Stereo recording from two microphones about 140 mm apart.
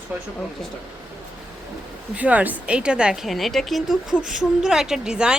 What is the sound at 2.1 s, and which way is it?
A woman's voice, 10° right (ahead or behind).